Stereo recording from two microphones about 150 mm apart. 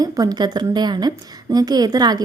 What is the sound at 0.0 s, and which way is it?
A woman's voice, 25° right (ahead or behind).